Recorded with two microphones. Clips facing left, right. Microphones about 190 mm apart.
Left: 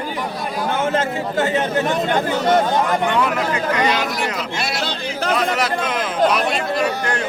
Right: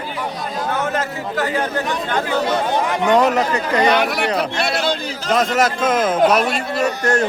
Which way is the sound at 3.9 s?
60° right (ahead or behind).